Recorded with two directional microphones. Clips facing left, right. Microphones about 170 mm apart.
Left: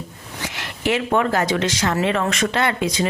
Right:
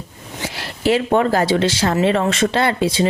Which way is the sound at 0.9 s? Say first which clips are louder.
Right 4 dB; 30° right (ahead or behind).